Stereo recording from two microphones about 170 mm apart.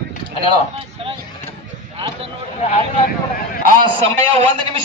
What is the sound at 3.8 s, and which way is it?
A man's voice, 30° right (ahead or behind).